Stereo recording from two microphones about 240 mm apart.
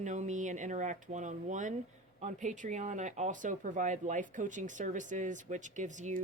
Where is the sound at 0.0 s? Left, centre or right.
Right.